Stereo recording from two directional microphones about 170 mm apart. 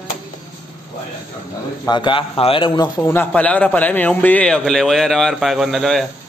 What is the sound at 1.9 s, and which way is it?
A man's voice, 30° left (ahead or behind).